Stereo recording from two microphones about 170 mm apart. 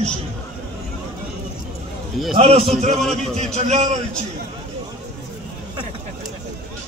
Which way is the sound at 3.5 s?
40° right (ahead or behind).